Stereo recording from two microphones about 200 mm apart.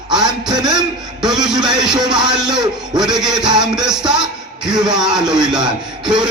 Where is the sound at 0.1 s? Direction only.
20° right (ahead or behind).